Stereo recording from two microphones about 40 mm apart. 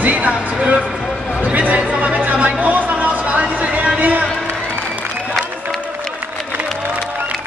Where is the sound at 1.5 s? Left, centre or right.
Right.